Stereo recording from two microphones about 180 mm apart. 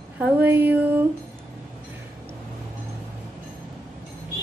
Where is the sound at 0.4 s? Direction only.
10° right (ahead or behind).